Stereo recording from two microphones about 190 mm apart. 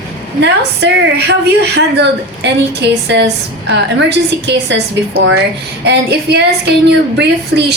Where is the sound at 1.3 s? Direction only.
60° right (ahead or behind).